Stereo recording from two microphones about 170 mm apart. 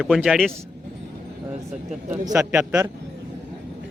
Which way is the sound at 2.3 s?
5° right (ahead or behind).